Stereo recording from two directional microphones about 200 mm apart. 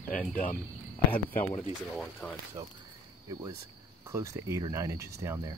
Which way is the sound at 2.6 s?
20° right (ahead or behind).